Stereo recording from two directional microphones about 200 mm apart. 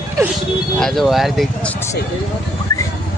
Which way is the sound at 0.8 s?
Centre (ahead or behind).